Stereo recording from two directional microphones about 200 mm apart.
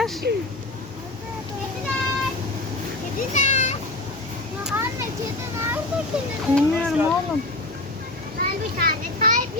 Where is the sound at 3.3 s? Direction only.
35° left (ahead or behind).